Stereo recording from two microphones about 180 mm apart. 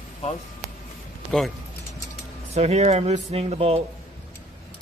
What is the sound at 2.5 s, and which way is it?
Speech, 35° right (ahead or behind).